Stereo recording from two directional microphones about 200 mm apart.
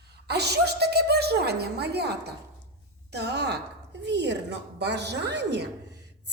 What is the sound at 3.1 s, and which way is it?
A woman's voice, 60° right (ahead or behind).